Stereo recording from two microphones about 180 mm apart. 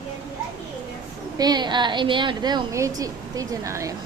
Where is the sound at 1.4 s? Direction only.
25° right (ahead or behind).